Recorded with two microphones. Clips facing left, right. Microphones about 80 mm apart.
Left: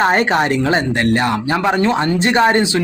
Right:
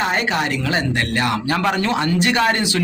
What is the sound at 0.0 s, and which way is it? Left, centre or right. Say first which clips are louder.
A man's voice: left 6 dB; left.